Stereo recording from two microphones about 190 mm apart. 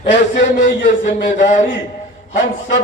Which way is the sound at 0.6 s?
65° left (ahead or behind).